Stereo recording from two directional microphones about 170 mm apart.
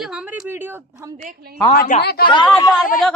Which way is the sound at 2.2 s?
30° left (ahead or behind).